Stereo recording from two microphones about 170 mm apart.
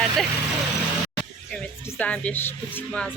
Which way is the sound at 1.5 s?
10° left (ahead or behind).